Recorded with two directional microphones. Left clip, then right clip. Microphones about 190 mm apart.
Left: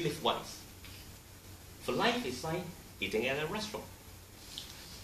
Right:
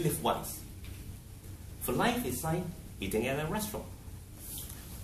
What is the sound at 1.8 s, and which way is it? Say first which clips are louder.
Speech: right 1 dB; centre (ahead or behind).